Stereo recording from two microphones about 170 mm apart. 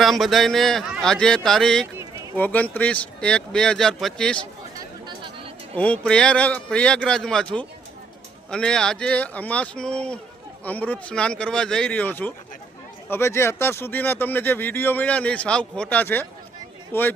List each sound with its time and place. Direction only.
0.0 s speech: centre (ahead or behind)
5.7 s speech: 10° left (ahead or behind)